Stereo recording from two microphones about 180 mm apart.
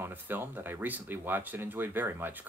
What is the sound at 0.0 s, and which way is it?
Speech, 10° right (ahead or behind).